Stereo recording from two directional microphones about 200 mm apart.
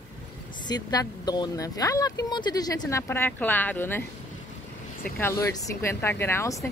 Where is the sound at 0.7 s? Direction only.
20° left (ahead or behind).